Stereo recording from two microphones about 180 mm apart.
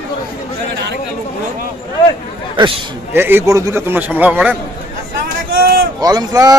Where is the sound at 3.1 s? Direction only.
10° right (ahead or behind).